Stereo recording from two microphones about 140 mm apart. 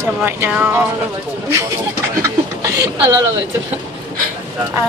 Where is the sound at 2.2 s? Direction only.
25° right (ahead or behind).